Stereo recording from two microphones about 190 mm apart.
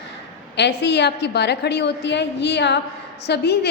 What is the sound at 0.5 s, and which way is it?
A woman's voice, 65° left (ahead or behind).